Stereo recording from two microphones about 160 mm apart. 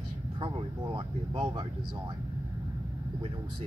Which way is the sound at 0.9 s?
30° right (ahead or behind).